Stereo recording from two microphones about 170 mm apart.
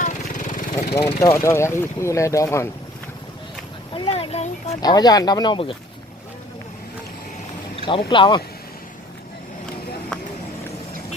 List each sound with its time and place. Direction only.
0.0 s vehicle: 45° left (ahead or behind)
0.9 s speech: 15° left (ahead or behind)
3.9 s speech: 35° left (ahead or behind)
4.8 s speech: 25° left (ahead or behind)
7.9 s speech: 30° left (ahead or behind)